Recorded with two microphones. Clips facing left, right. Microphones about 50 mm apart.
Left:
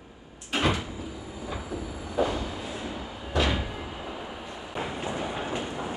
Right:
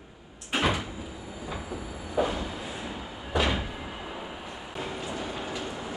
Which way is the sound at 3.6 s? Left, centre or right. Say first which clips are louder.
Left 1 dB; centre.